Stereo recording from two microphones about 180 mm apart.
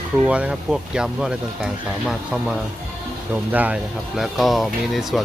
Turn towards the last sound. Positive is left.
turn(degrees=0)  # may be behind; listen again after turning